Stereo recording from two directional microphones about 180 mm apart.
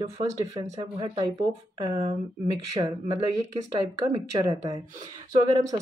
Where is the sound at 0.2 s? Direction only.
20° right (ahead or behind).